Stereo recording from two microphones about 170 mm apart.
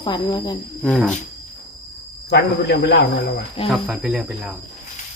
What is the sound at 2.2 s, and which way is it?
Speech, 80° left.